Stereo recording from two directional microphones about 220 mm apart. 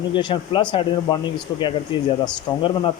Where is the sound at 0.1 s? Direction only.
20° left (ahead or behind).